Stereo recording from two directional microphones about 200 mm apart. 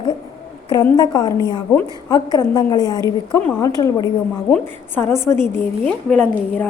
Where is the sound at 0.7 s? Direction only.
20° left (ahead or behind).